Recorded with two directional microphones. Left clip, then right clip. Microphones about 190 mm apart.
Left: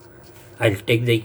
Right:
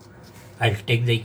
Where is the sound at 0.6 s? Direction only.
60° left (ahead or behind).